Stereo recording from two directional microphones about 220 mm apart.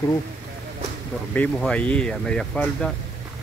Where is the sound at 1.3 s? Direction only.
5° left (ahead or behind).